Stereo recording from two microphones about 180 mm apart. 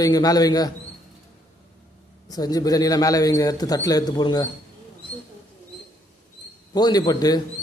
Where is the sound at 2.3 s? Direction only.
20° left (ahead or behind).